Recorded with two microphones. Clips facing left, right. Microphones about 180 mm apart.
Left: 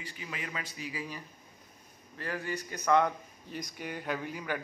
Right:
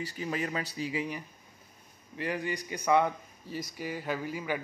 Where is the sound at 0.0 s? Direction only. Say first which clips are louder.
Right 8 dB; 40° right (ahead or behind).